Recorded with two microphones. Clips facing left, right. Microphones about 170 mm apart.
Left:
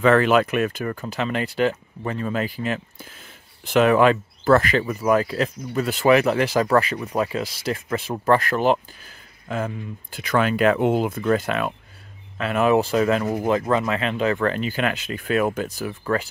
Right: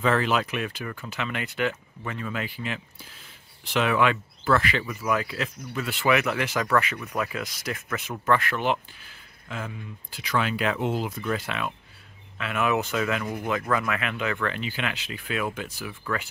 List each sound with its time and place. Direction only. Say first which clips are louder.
0.0 s speech: left 7 dB; 60° left (ahead or behind); by 16.3 s 40° left (ahead or behind)